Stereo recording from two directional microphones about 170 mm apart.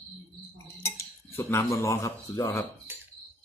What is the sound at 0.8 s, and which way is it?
Cutlery, 15° left (ahead or behind).